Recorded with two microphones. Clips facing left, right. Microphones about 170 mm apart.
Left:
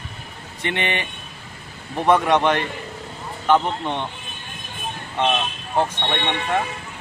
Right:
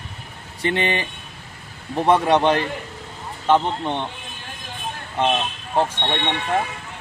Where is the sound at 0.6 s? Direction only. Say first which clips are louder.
Right 3 dB; 35° right (ahead or behind).